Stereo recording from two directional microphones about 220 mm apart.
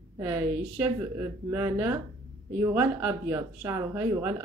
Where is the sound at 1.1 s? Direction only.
15° right (ahead or behind).